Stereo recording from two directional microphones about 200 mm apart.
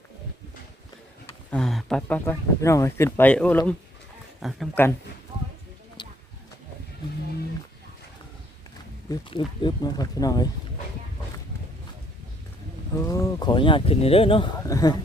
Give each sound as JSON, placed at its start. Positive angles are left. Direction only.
{"t": 1.5, "sound": "speech", "side_deg": 5}
{"t": 4.7, "sound": "speech", "side_deg": 10}
{"t": 9.0, "sound": "speech", "side_deg": 20}
{"t": 12.9, "sound": "speech", "side_deg": 15}
{"t": 14.7, "sound": "speech", "side_deg": 15}